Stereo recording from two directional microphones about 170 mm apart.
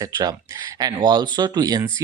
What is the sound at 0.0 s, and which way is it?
Speech, 20° right (ahead or behind).